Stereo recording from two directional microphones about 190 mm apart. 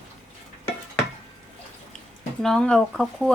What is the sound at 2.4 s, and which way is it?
Speech, 5° left (ahead or behind).